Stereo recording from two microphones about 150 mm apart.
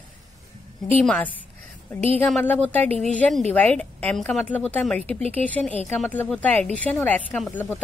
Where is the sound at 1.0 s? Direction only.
10° left (ahead or behind).